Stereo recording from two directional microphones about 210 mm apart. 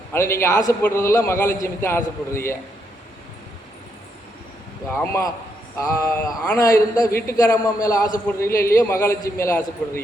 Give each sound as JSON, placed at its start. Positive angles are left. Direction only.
{"t": 0.1, "sound": "a man's voice", "side_deg": 10}
{"t": 4.9, "sound": "a man's voice", "side_deg": 10}